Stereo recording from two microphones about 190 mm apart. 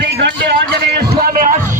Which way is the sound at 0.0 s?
65° right (ahead or behind).